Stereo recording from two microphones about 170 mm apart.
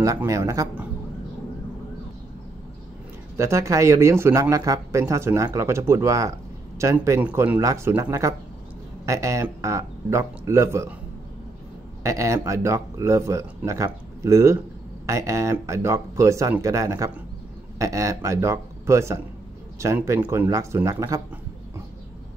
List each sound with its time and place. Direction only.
0.0 s speech: 20° right (ahead or behind)
3.3 s speech: 15° right (ahead or behind)
12.0 s speech: 20° right (ahead or behind)